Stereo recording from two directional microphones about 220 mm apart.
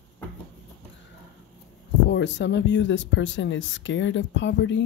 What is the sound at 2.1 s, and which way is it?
Speech, 55° left (ahead or behind).